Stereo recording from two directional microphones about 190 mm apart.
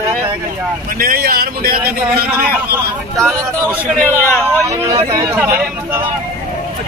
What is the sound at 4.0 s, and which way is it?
Speech, 10° left (ahead or behind).